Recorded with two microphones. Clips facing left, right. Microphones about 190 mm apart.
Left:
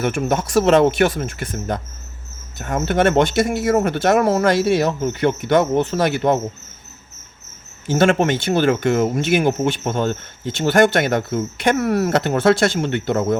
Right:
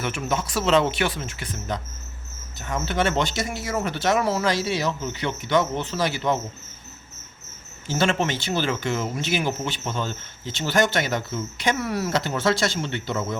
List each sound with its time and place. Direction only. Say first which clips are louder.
0.0 s speech: left 7 dB; 50° left (ahead or behind)
7.9 s speech: left 7 dB; 55° left (ahead or behind)